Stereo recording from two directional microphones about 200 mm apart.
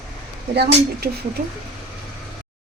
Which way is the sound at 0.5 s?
55° right (ahead or behind).